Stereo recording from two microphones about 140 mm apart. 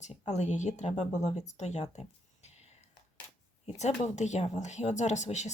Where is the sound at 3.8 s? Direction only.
55° left (ahead or behind).